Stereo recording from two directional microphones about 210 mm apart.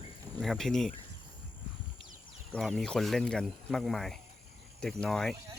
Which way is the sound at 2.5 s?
Centre (ahead or behind).